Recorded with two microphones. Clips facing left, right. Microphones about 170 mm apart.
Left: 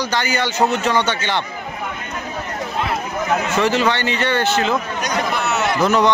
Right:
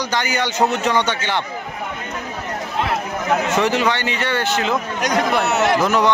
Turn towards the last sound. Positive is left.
turn(degrees=-10)  # may be behind; listen again after turning